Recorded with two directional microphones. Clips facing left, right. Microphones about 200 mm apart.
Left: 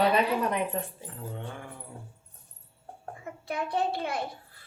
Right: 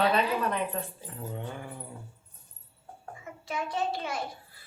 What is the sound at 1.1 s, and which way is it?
Dog, 5° right (ahead or behind).